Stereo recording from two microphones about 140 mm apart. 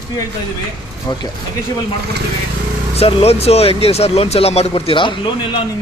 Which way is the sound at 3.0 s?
45° left (ahead or behind).